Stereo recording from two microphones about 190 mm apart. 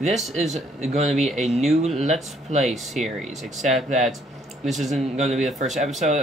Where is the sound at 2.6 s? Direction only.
Centre (ahead or behind).